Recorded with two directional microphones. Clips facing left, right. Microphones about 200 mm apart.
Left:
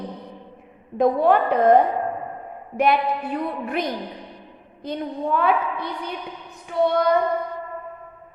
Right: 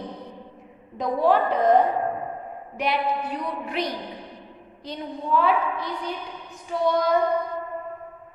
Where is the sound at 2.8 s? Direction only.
55° left (ahead or behind).